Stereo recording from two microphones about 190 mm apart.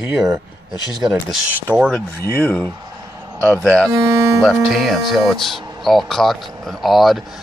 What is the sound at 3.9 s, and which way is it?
Speech, 15° right (ahead or behind).